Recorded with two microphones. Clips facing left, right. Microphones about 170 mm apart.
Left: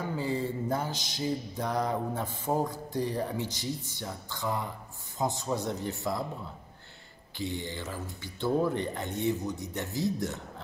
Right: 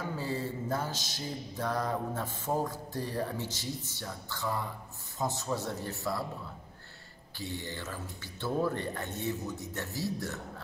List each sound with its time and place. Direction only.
0.1 s mantra: 15° left (ahead or behind)
7.3 s mantra: 15° left (ahead or behind)